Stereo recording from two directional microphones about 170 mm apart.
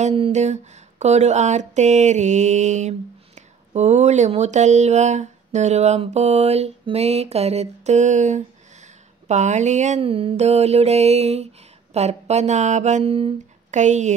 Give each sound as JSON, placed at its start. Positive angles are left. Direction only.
{"t": 0.0, "sound": "speech", "side_deg": -35}
{"t": 8.8, "sound": "a sound", "side_deg": -45}
{"t": 11.9, "sound": "speech", "side_deg": -40}